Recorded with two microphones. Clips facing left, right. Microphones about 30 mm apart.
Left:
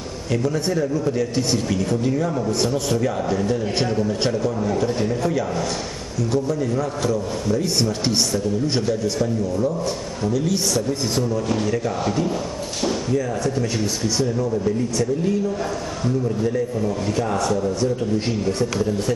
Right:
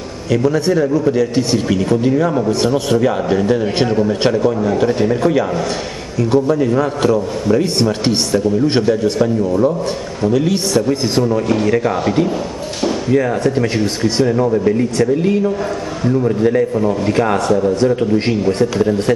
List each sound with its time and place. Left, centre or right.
0.4 s a man's voice: right
7.8 s a man's voice: right
17.5 s a man's voice: right
17.7 s a man's voice: right